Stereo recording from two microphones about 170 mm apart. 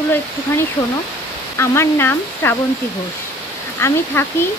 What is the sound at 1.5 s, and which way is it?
Speech, 15° left (ahead or behind).